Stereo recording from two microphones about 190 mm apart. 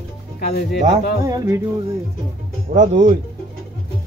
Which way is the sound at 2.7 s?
45° right (ahead or behind).